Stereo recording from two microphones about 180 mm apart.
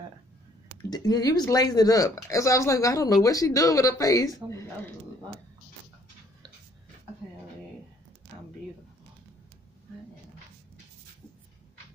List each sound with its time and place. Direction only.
0.8 s speech: 20° left (ahead or behind)